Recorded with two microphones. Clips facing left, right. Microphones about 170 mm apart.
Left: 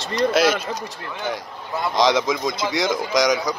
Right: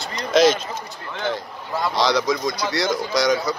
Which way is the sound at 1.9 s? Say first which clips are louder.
Left 2 dB; 20° left (ahead or behind).